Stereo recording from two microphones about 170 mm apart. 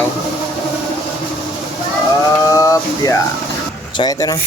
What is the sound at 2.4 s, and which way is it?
Speech, 20° left (ahead or behind).